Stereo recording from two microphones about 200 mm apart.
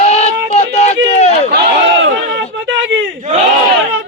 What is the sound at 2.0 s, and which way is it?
Battle cry, 65° right (ahead or behind).